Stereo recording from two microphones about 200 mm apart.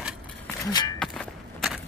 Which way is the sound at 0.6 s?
20° left (ahead or behind).